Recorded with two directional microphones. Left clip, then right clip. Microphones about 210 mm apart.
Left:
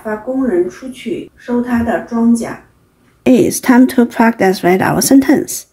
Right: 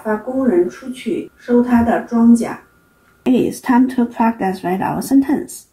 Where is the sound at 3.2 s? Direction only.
55° left (ahead or behind).